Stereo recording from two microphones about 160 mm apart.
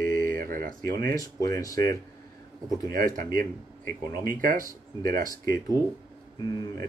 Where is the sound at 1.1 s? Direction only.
20° left (ahead or behind).